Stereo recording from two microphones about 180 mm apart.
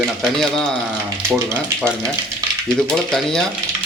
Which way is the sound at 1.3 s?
15° right (ahead or behind).